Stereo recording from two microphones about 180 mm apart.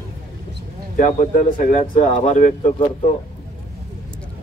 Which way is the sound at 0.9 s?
45° left (ahead or behind).